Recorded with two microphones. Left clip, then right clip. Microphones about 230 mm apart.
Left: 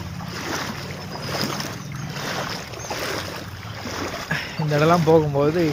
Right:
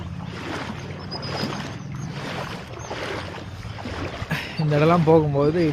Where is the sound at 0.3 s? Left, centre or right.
Left.